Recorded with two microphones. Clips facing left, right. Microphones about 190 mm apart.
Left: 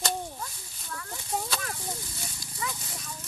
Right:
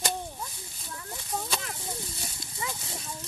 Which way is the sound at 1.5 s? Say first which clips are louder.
Even; 20° right (ahead or behind).